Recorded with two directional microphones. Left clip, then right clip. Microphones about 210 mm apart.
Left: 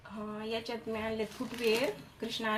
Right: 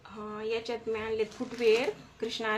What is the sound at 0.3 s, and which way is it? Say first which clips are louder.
Speech: right 5 dB; 25° right (ahead or behind).